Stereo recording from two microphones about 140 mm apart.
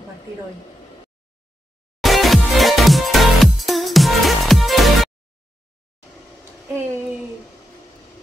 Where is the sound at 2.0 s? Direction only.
Centre (ahead or behind).